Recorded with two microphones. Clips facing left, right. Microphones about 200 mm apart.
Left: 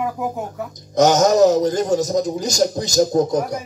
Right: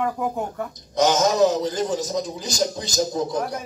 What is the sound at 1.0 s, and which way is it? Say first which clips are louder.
A man's voice: left 5 dB; 45° left (ahead or behind).